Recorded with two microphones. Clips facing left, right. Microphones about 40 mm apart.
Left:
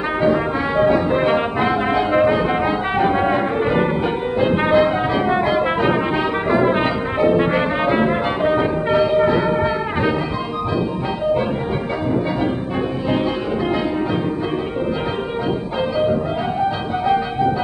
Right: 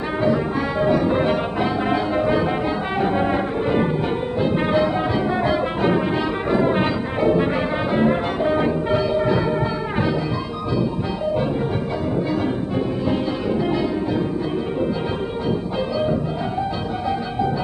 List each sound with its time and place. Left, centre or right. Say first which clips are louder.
0.2 s brass instrument: left 2 dB; left
3.0 s music: left 3 dB; left
4.6 s brass instrument: left 4 dB; left
8.1 s music: left 2 dB; centre